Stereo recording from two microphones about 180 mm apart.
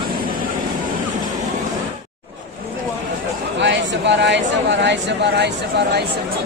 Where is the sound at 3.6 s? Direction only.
80° right.